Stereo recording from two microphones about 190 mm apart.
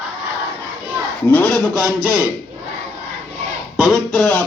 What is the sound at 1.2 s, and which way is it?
Speech, 10° left (ahead or behind).